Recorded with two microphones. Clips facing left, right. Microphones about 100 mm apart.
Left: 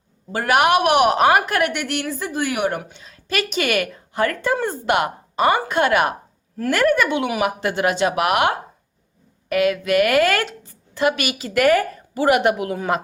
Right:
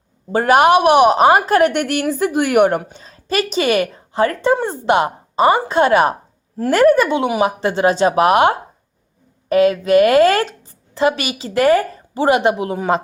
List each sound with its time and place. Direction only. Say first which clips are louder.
0.3 s a woman's voice: right 5 dB; 35° right (ahead or behind)